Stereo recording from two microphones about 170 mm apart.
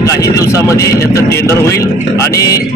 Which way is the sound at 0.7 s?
20° left (ahead or behind).